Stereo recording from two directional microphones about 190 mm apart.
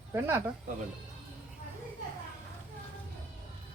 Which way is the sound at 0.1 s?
15° right (ahead or behind).